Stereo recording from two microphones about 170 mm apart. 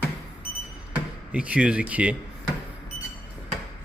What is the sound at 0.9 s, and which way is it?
Speech, 5° right (ahead or behind).